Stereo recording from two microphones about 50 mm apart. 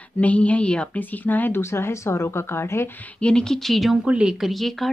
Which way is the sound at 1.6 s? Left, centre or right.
Left.